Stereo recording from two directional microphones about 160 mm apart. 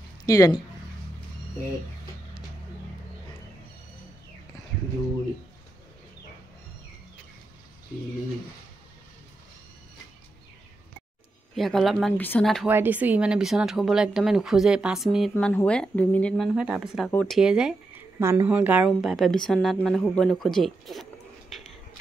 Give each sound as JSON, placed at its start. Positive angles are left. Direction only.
{"t": 0.3, "sound": "speech", "side_deg": 20}
{"t": 11.5, "sound": "speech", "side_deg": 0}
{"t": 12.2, "sound": "speech", "side_deg": 10}
{"t": 12.6, "sound": "speech", "side_deg": -10}
{"t": 16.5, "sound": "speech", "side_deg": -5}
{"t": 17.1, "sound": "speech", "side_deg": 10}
{"t": 17.4, "sound": "speech", "side_deg": -5}
{"t": 18.2, "sound": "a woman's voice", "side_deg": -15}
{"t": 18.9, "sound": "speech", "side_deg": 0}